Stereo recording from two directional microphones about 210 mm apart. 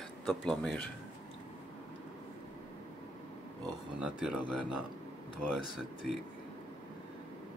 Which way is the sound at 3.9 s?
5° right (ahead or behind).